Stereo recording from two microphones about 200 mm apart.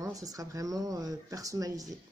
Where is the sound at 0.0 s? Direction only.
15° right (ahead or behind).